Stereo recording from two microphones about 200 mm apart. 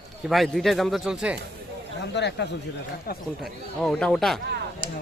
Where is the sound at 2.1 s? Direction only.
60° left (ahead or behind).